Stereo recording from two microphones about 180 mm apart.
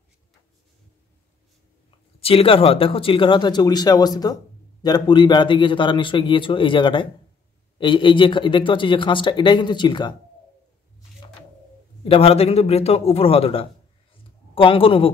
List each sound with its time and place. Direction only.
2.1 s speech: 30° left (ahead or behind)
12.0 s a man's voice: 30° left (ahead or behind)